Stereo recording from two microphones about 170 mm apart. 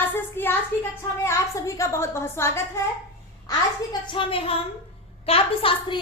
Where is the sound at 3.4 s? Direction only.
25° left (ahead or behind).